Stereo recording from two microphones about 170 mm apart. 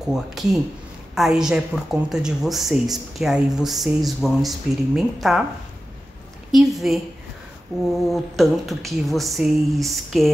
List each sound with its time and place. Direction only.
0.1 s speech: centre (ahead or behind)
6.5 s speech: centre (ahead or behind)
8.1 s speech: centre (ahead or behind)